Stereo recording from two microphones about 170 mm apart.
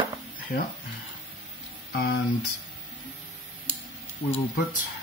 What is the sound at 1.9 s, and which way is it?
Speech, 65° left (ahead or behind).